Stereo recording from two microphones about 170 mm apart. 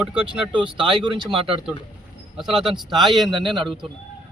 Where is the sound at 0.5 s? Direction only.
30° right (ahead or behind).